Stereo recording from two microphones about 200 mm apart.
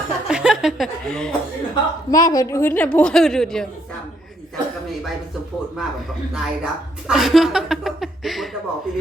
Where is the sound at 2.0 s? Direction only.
20° left (ahead or behind); by 3.7 s 5° left (ahead or behind).